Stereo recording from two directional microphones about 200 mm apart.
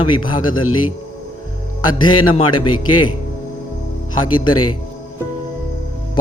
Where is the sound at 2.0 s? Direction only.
90° left.